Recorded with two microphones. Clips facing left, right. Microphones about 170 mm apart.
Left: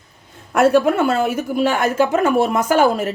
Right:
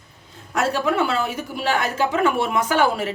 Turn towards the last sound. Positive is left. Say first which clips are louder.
# left 4 dB
turn(degrees=45)  # may be behind; listen again after turning